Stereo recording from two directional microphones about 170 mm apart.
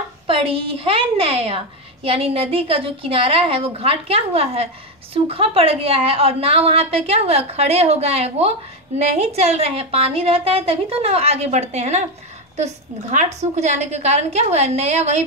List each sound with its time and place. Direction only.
0.3 s a woman's voice: 35° right (ahead or behind)